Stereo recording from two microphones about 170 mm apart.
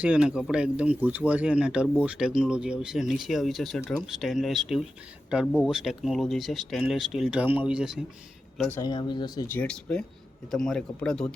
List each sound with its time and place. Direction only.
0.0 s speech: 5° right (ahead or behind)
8.5 s speech: 5° left (ahead or behind)
8.8 s speech: 25° left (ahead or behind); by 11.3 s 5° left (ahead or behind)